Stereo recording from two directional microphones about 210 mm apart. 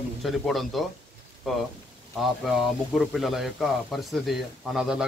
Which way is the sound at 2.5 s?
Centre (ahead or behind).